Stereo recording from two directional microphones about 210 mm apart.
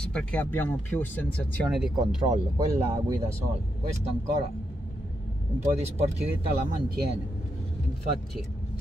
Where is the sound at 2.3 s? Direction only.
20° right (ahead or behind).